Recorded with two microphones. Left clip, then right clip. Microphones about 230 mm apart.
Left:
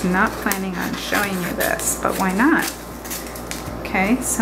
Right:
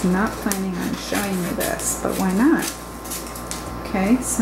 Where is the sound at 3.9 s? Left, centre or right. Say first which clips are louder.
Left 4 dB; centre.